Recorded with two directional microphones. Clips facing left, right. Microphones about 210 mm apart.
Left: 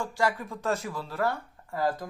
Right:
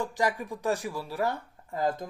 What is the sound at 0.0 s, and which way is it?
Speech, 15° right (ahead or behind).